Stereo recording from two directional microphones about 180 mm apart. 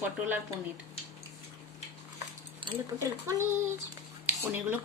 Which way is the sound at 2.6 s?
15° right (ahead or behind).